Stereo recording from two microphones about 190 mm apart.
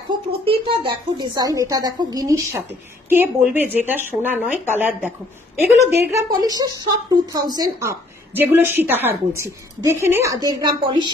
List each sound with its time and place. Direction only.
0.5 s a woman's voice: 25° right (ahead or behind)